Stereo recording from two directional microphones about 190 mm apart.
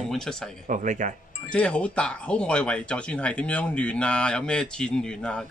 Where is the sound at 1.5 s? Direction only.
5° left (ahead or behind).